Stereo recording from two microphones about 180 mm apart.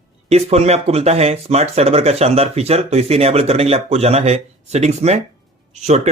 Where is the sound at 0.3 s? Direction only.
35° right (ahead or behind).